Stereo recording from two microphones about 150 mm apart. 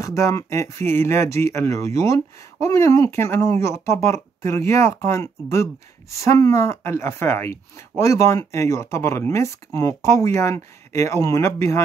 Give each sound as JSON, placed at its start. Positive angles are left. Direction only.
{"t": 0.0, "sound": "speech", "side_deg": 20}